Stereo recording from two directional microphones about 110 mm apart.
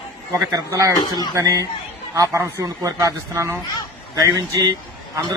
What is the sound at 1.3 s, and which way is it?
Speech, 30° right (ahead or behind).